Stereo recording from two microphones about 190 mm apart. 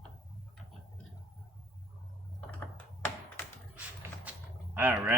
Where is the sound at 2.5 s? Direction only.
10° left (ahead or behind).